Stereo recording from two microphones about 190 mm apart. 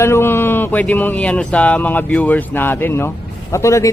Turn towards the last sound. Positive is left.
turn(degrees=15)  # may be behind; listen again after turning